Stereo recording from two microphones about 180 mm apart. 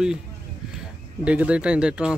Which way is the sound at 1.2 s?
5° right (ahead or behind).